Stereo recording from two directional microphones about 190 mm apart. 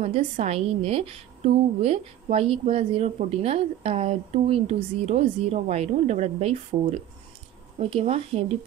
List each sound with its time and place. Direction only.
0.0 s a woman's voice: 35° right (ahead or behind)